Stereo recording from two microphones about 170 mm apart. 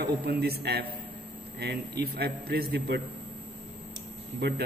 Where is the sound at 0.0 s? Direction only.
70° right (ahead or behind).